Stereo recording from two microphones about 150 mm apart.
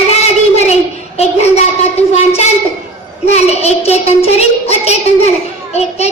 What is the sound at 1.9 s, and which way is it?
Child singing, 45° left (ahead or behind).